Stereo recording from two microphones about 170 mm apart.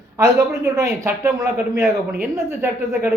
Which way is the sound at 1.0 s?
20° right (ahead or behind).